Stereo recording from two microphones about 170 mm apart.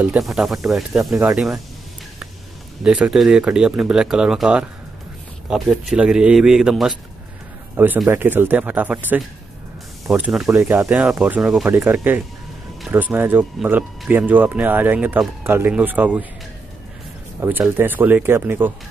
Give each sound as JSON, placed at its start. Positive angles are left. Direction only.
{"t": 0.0, "sound": "speech", "side_deg": -5}
{"t": 2.8, "sound": "speech", "side_deg": -5}
{"t": 17.4, "sound": "speech", "side_deg": -10}